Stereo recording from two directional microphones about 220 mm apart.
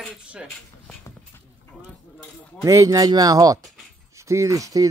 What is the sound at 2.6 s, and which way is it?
Speech, 15° right (ahead or behind).